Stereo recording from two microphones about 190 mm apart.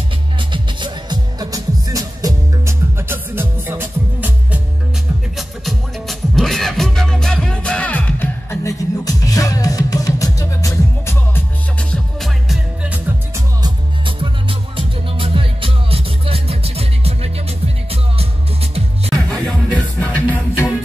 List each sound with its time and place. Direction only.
0.5 s music: 25° right (ahead or behind)
5.7 s music: centre (ahead or behind)
11.9 s music: centre (ahead or behind)
13.6 s music: 25° right (ahead or behind)
19.2 s music: 5° left (ahead or behind)